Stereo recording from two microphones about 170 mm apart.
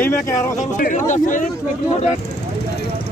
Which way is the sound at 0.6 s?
45° left (ahead or behind).